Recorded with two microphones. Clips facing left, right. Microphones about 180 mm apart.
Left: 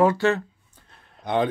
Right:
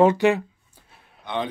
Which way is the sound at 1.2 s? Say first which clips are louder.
Left 5 dB; 45° left (ahead or behind).